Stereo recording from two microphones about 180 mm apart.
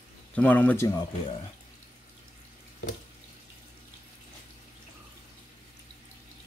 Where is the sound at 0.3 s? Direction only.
10° left (ahead or behind).